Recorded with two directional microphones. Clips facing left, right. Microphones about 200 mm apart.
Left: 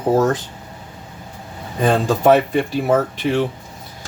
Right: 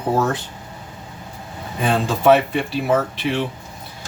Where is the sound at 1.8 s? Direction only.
45° left (ahead or behind).